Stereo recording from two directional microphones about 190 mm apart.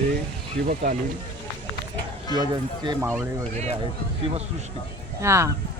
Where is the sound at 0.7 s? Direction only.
45° right (ahead or behind).